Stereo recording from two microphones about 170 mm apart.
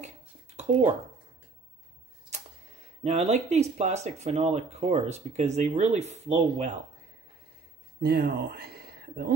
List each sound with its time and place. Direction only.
0.0 s a sound: 40° right (ahead or behind)
3.0 s speech: 40° right (ahead or behind)
8.0 s speech: 65° right (ahead or behind)